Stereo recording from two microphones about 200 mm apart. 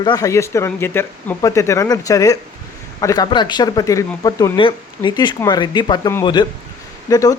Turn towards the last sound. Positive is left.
turn(degrees=15)  # may be behind; listen again after turning